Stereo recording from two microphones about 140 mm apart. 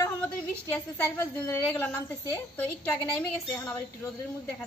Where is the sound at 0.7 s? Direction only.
15° left (ahead or behind).